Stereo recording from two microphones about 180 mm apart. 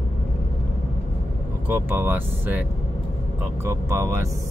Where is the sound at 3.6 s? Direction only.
15° right (ahead or behind).